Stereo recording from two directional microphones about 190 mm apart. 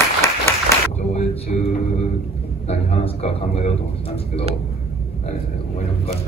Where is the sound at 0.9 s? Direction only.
35° left (ahead or behind).